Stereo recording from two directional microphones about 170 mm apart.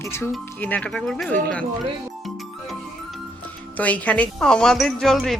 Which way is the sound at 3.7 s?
10° left (ahead or behind).